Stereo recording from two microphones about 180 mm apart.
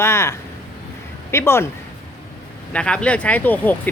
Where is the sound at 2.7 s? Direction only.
5° left (ahead or behind).